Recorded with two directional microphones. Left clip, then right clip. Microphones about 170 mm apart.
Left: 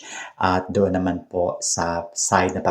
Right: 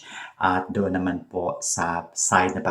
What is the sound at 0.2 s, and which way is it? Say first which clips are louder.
Speech: left 1 dB; 30° left (ahead or behind).